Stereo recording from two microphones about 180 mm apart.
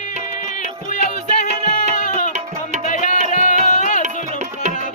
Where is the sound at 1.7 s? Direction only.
45° left (ahead or behind).